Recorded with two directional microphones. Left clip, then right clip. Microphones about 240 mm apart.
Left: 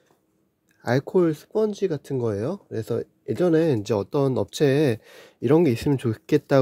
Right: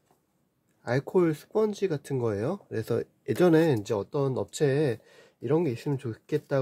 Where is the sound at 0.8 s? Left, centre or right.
Left.